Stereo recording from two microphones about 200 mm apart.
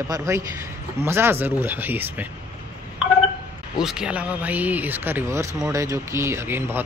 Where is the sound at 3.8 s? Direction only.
5° right (ahead or behind).